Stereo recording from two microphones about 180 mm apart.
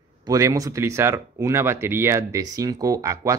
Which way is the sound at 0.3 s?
20° right (ahead or behind).